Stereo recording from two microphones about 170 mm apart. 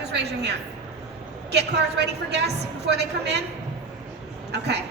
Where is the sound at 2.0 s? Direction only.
80° right.